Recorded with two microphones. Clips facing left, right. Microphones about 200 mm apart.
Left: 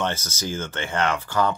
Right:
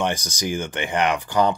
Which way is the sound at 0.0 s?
15° right (ahead or behind).